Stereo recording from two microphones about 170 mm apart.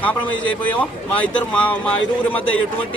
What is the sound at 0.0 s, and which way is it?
Speech, 10° left (ahead or behind).